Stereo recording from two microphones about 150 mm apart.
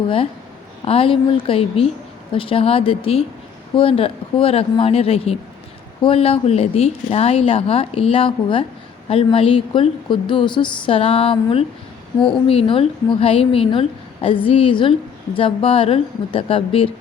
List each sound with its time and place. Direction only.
0.9 s a woman's voice: 40° left (ahead or behind)